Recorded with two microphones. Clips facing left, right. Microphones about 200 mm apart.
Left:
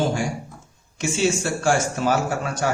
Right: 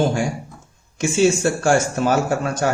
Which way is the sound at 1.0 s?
45° right (ahead or behind).